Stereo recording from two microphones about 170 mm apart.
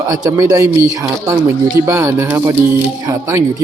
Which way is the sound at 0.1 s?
20° right (ahead or behind).